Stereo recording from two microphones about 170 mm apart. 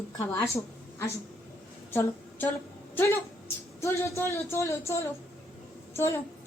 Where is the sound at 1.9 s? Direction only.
10° left (ahead or behind).